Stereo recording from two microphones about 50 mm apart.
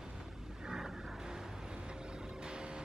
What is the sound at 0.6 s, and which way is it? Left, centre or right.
Vehicle, centre.